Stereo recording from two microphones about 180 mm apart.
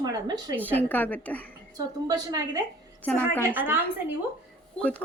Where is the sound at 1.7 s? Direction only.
20° right (ahead or behind).